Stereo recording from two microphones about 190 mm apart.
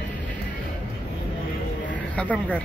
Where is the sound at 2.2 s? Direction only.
5° left (ahead or behind).